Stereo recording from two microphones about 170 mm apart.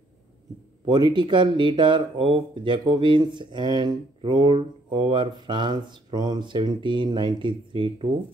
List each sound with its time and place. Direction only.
0.8 s speech: 25° right (ahead or behind)